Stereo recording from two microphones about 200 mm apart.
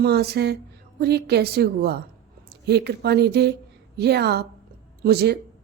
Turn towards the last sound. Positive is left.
turn(degrees=-55)  # may be behind; listen again after turning